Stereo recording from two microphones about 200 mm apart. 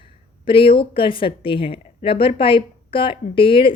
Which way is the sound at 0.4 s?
25° left (ahead or behind).